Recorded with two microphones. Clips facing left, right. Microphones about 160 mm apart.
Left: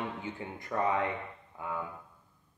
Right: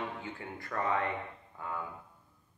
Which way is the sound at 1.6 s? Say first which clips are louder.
Left 2 dB; 15° left (ahead or behind).